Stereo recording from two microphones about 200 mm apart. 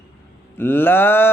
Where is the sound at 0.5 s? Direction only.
10° left (ahead or behind).